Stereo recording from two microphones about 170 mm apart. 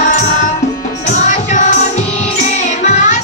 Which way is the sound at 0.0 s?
50° left (ahead or behind).